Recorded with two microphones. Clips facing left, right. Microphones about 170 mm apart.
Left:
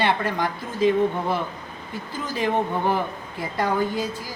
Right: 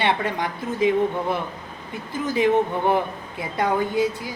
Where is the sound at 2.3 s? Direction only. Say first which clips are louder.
Right 4 dB; 20° right (ahead or behind).